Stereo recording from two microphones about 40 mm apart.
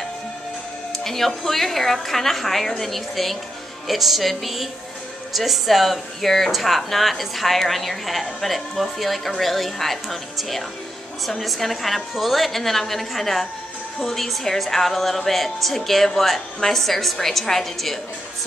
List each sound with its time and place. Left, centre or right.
0.9 s a woman's voice: centre